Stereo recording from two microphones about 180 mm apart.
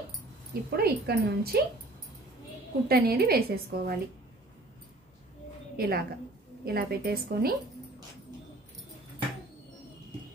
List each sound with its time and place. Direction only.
0.7 s a woman's voice: 60° right (ahead or behind)
2.9 s a woman's voice: 60° right (ahead or behind)
5.8 s a woman's voice: 55° right (ahead or behind)